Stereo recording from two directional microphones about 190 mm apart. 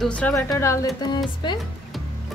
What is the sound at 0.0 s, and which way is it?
Speech, 5° left (ahead or behind).